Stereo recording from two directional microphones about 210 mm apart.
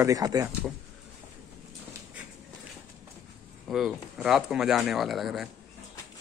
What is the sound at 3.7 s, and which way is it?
Speech, centre (ahead or behind).